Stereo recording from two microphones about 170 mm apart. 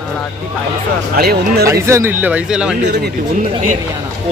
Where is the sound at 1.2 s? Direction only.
65° right (ahead or behind).